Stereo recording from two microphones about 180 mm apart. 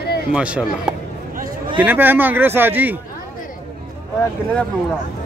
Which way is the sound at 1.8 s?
10° right (ahead or behind).